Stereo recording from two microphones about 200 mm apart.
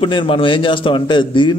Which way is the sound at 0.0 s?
25° left (ahead or behind).